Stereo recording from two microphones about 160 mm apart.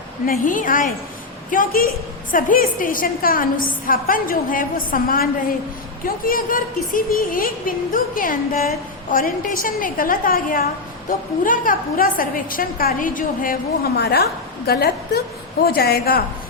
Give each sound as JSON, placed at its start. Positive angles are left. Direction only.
{"t": 0.3, "sound": "speech", "side_deg": 55}